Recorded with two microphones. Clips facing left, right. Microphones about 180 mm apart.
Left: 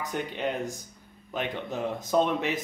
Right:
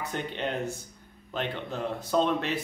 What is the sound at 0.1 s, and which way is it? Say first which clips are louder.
Speech: left 2 dB; 10° left (ahead or behind).